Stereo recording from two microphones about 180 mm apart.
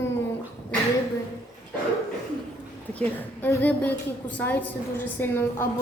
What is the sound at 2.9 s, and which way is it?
A woman's voice, 10° left (ahead or behind).